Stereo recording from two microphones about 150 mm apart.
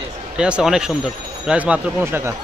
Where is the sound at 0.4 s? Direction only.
5° right (ahead or behind).